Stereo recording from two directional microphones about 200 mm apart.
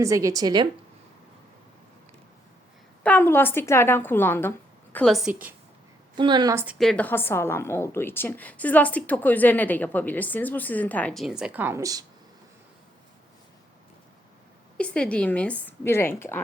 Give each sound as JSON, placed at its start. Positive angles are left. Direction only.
{"t": 0.0, "sound": "a woman's voice", "side_deg": -15}
{"t": 3.0, "sound": "a woman's voice", "side_deg": 10}
{"t": 6.1, "sound": "a woman's voice", "side_deg": -20}
{"t": 6.7, "sound": "a woman's voice", "side_deg": 5}
{"t": 14.8, "sound": "a woman's voice", "side_deg": 5}